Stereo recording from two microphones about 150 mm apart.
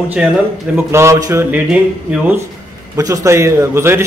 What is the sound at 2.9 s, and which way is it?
Speech, 20° right (ahead or behind).